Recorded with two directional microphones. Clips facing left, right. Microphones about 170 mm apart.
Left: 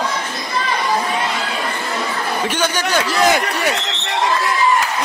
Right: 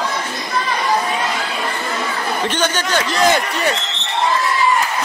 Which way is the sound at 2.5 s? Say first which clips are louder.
Left 1 dB; 10° left (ahead or behind).